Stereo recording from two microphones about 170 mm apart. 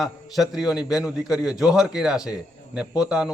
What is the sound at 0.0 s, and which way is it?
A man's voice, centre (ahead or behind).